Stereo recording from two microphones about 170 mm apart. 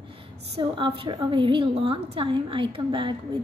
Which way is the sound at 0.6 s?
30° right (ahead or behind).